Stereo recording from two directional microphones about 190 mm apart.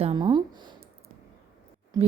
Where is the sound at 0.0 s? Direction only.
25° right (ahead or behind).